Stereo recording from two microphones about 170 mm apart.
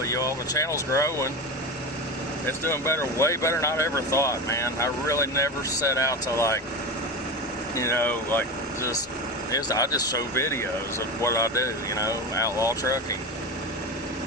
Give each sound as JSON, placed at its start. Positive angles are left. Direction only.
{"t": 0.0, "sound": "speech", "side_deg": 20}
{"t": 2.5, "sound": "speech", "side_deg": 15}
{"t": 7.8, "sound": "speech", "side_deg": 15}